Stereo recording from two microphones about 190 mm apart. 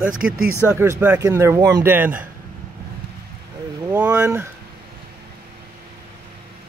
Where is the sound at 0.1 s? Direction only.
45° right (ahead or behind).